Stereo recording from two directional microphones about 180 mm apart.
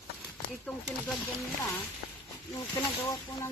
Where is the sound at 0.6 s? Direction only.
5° left (ahead or behind).